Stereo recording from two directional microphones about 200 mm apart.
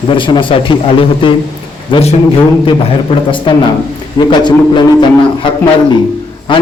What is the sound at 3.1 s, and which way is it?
A man's voice, 25° left (ahead or behind).